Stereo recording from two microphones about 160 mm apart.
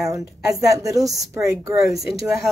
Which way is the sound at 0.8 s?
Centre (ahead or behind).